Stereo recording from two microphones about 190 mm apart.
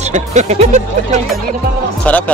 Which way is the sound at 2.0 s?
5° left (ahead or behind).